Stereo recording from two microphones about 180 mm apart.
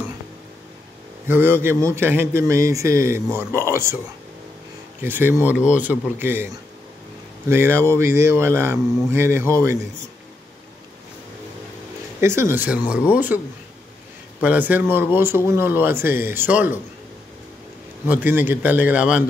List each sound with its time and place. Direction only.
1.2 s speech: 10° right (ahead or behind)
5.0 s speech: 10° right (ahead or behind)
12.2 s speech: 15° right (ahead or behind)
14.4 s speech: 10° right (ahead or behind)
18.0 s speech: 10° right (ahead or behind)